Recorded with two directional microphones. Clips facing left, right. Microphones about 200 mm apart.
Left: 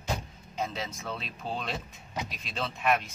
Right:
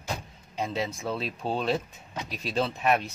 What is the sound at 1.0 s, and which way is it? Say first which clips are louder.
Speech: right 6 dB; 30° right (ahead or behind).